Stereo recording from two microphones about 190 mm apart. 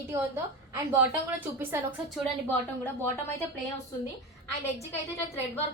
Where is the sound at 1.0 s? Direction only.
10° right (ahead or behind).